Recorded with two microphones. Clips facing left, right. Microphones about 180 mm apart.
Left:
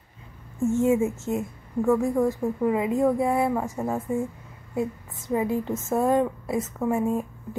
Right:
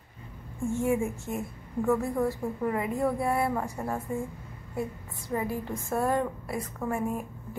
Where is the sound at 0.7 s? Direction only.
20° left (ahead or behind).